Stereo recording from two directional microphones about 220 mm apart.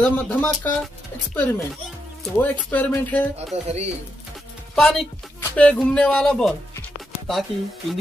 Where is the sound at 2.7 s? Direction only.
5° left (ahead or behind).